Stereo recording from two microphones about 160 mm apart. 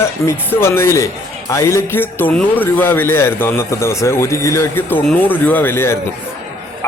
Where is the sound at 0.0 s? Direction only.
15° left (ahead or behind).